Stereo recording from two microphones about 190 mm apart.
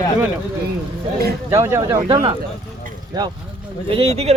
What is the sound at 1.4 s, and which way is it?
Speech, 15° right (ahead or behind).